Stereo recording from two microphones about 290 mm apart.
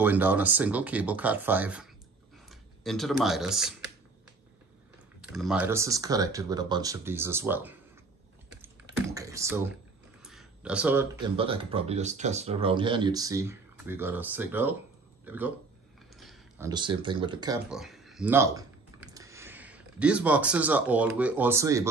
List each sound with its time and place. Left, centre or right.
0.0 s speech: centre
5.2 s speech: centre
8.5 s typing: centre
10.2 s a sound: centre
11.3 s speech: centre
16.2 s a sound: centre
16.6 s speech: centre
17.6 s speech: centre